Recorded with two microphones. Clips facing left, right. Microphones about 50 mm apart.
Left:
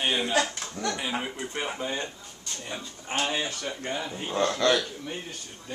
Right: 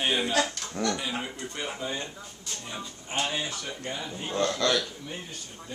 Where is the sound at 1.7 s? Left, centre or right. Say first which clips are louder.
Left 2 dB; left.